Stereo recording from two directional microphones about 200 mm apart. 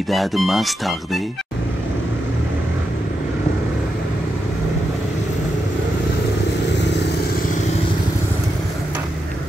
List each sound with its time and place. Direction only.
0.1 s speech: centre (ahead or behind)
6.8 s vehicle: 60° left (ahead or behind)